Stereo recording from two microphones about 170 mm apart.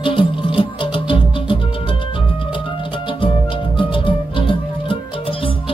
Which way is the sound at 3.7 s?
30° left (ahead or behind).